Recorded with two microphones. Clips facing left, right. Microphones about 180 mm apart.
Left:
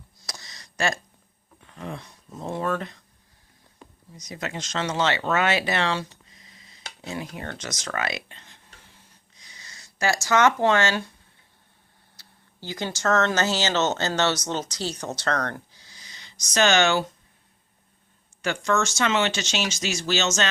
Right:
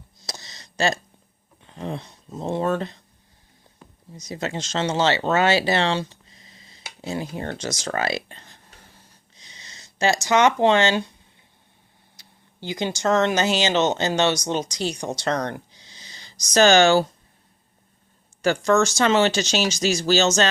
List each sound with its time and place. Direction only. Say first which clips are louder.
0.3 s a sound: right 4 dB; 25° right (ahead or behind)
1.6 s speech: right 5 dB; 30° right (ahead or behind)
4.1 s speech: right 4 dB; 30° right (ahead or behind)
9.3 s a sound: right 2 dB; 25° right (ahead or behind)
12.1 s speech: right 1 dB; 15° right (ahead or behind); by 17.1 s 35° right (ahead or behind)
18.4 s speech: right 6 dB; 35° right (ahead or behind)